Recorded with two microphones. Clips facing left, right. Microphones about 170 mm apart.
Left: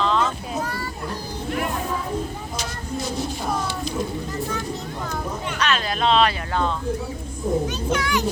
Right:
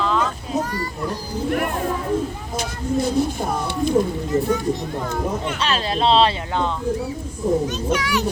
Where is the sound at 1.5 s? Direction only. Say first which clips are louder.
Right 2 dB; 50° right (ahead or behind).